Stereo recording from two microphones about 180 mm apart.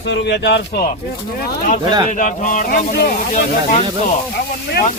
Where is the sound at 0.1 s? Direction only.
75° left (ahead or behind).